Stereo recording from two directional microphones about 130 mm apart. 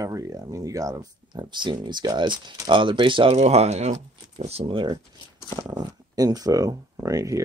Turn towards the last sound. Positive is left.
turn(degrees=-25)  # may be behind; listen again after turning